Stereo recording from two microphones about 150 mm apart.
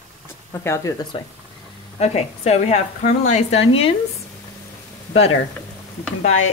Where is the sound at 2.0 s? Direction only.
45° left (ahead or behind).